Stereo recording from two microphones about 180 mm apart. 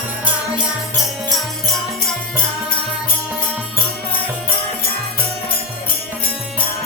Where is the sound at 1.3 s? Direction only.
Centre (ahead or behind).